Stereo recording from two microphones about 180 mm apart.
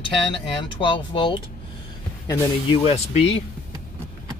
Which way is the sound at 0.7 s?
25° left (ahead or behind).